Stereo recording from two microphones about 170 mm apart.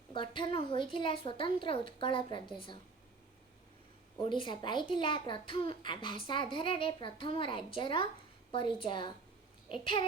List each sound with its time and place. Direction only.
0.1 s a woman's voice: 30° left (ahead or behind)
4.2 s a woman's voice: 30° left (ahead or behind)